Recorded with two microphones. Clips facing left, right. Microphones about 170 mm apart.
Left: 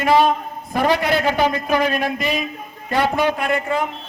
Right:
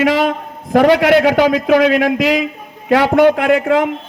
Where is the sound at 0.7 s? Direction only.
80° right.